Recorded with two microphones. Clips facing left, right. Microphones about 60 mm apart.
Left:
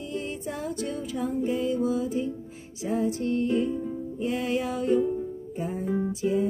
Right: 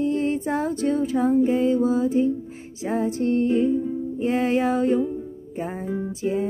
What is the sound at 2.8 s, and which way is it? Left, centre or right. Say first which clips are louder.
Music: right 4 dB; right.